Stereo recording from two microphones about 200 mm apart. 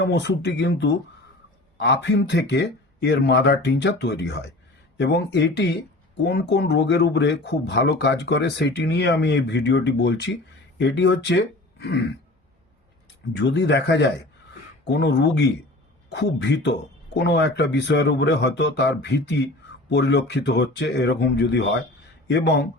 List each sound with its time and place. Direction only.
0.0 s speech: 60° left (ahead or behind)
13.4 s speech: 60° left (ahead or behind)